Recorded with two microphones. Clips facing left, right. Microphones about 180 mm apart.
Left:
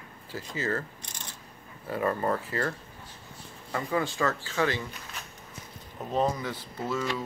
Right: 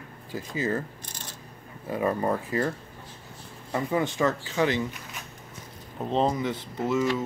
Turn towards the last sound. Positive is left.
turn(degrees=-20)  # may be behind; listen again after turning